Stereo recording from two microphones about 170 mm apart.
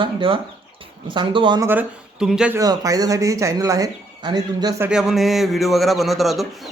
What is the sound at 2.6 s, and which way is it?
Speech, 20° right (ahead or behind).